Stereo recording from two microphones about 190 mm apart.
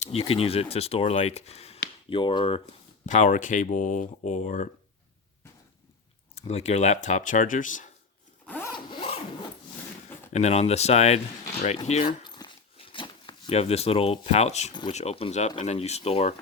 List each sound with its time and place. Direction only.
0.0 s speech: 30° left (ahead or behind)
3.1 s speech: 40° left (ahead or behind)
6.3 s speech: 35° left (ahead or behind)
8.4 s zipper: 10° left (ahead or behind)
8.7 s zipper: 25° left (ahead or behind)
10.3 s speech: 35° left (ahead or behind)
11.9 s a sound: 35° left (ahead or behind)
14.7 s speech: 25° left (ahead or behind)